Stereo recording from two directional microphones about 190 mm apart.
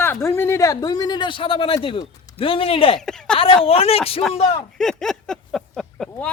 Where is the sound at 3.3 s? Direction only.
30° left (ahead or behind).